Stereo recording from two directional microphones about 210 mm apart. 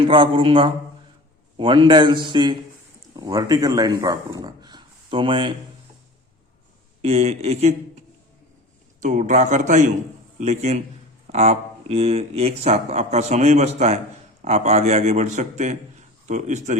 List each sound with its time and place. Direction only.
0.0 s a man's voice: 25° right (ahead or behind)
7.0 s speech: 30° right (ahead or behind)
9.0 s a man's voice: 35° right (ahead or behind)